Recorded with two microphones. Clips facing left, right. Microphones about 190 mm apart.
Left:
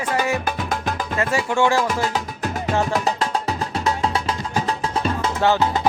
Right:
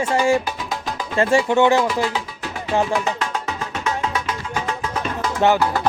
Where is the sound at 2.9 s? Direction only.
35° left (ahead or behind).